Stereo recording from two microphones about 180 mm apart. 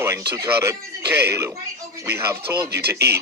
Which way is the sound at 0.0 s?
15° right (ahead or behind).